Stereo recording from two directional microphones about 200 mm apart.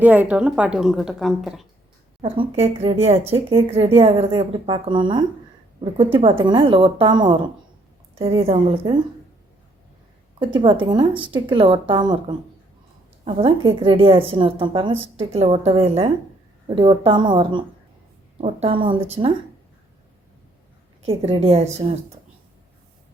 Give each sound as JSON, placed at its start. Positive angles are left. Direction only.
{"t": 0.0, "sound": "a woman's voice", "side_deg": -10}
{"t": 2.2, "sound": "speech", "side_deg": -30}
{"t": 6.4, "sound": "speech", "side_deg": -25}
{"t": 10.4, "sound": "speech", "side_deg": -25}
{"t": 21.2, "sound": "speech", "side_deg": -30}